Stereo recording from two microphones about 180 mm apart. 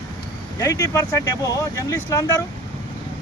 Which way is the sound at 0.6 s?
15° left (ahead or behind).